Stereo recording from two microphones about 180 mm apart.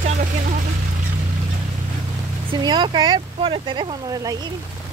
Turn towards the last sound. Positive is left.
turn(degrees=-20)  # may be behind; listen again after turning